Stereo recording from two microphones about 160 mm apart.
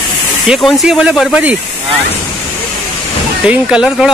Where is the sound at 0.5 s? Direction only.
Centre (ahead or behind).